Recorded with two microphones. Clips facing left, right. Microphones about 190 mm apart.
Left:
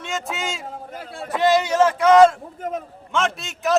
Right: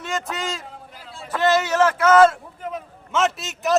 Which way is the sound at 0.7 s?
45° left (ahead or behind).